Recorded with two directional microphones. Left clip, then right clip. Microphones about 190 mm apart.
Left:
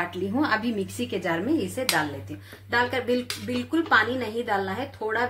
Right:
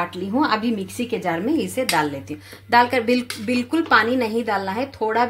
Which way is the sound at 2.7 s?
45° right (ahead or behind).